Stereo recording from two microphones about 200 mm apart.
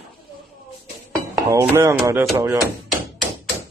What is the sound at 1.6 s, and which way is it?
Speech, 10° right (ahead or behind).